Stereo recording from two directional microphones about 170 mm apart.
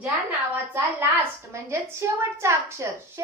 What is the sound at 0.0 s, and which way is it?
A woman's voice, 10° right (ahead or behind).